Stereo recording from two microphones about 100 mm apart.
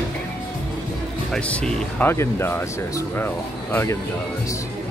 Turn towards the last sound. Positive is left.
turn(degrees=20)  # may be behind; listen again after turning